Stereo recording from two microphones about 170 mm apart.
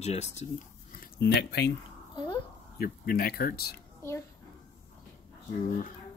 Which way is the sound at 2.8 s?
60° left (ahead or behind).